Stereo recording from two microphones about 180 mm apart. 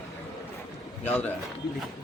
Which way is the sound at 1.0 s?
10° left (ahead or behind).